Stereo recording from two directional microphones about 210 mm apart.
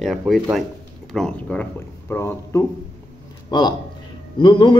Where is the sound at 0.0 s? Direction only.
Centre (ahead or behind).